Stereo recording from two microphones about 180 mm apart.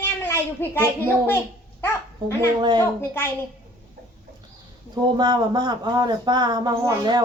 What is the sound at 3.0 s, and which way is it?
Speech, 10° left (ahead or behind).